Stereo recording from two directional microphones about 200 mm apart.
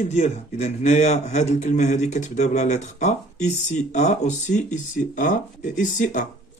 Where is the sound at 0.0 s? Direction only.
35° left (ahead or behind).